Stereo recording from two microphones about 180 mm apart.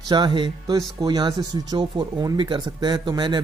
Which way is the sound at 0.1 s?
25° right (ahead or behind).